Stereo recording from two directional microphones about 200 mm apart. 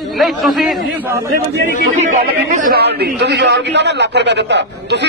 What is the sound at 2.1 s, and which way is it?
A man's voice, 45° right (ahead or behind).